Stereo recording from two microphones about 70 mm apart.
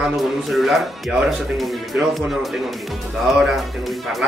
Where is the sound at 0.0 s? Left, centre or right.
Centre.